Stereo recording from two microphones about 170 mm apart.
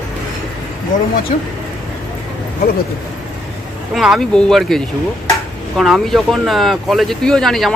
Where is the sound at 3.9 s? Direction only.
Centre (ahead or behind).